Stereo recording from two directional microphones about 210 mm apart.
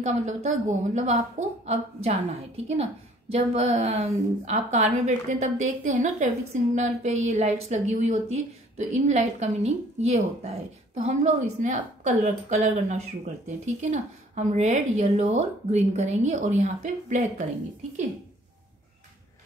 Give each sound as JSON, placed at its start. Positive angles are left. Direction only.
{"t": 0.0, "sound": "a woman's voice", "side_deg": -35}